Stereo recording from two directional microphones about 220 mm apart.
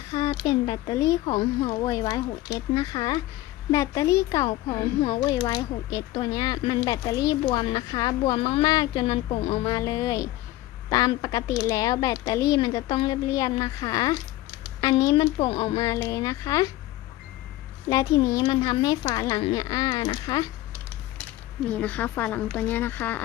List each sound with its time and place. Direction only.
0.1 s speech: 20° left (ahead or behind)
17.8 s speech: 15° left (ahead or behind)
21.7 s speech: 5° left (ahead or behind)